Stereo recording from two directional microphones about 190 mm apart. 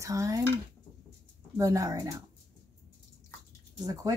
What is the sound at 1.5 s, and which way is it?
Speech, 15° right (ahead or behind).